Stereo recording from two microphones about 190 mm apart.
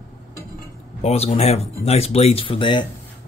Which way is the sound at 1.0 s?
35° left (ahead or behind).